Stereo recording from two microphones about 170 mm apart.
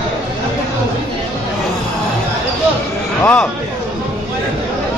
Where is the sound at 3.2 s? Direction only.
10° left (ahead or behind).